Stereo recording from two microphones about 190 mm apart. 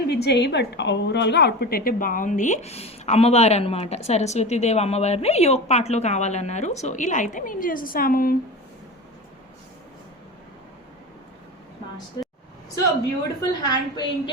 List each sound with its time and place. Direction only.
0.1 s a woman's voice: 60° left (ahead or behind)
13.5 s a woman's voice: 20° left (ahead or behind)